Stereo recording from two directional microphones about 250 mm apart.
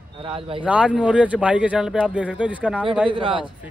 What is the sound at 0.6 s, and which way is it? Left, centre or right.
Speech, centre.